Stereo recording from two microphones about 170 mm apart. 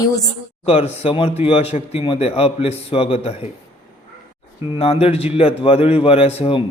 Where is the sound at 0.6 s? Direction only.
35° left (ahead or behind).